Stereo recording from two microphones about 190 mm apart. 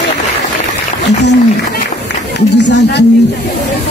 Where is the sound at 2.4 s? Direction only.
65° left (ahead or behind).